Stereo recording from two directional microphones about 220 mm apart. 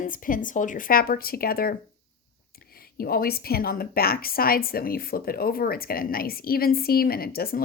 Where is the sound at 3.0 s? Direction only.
45° left (ahead or behind).